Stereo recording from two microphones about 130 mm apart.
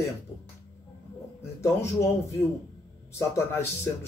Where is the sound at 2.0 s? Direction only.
25° left (ahead or behind).